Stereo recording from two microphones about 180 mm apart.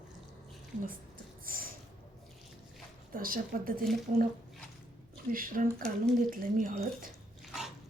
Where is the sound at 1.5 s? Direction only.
55° right (ahead or behind).